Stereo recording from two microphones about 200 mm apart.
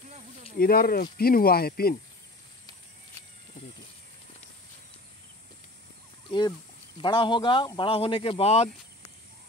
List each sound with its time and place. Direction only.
0.6 s speech: 50° left (ahead or behind)
7.0 s speech: 25° left (ahead or behind)